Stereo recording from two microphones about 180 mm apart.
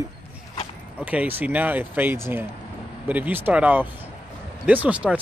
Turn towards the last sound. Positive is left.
turn(degrees=-5)  # may be behind; listen again after turning